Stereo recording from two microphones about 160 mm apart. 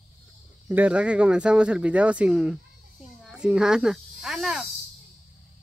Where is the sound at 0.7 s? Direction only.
10° right (ahead or behind).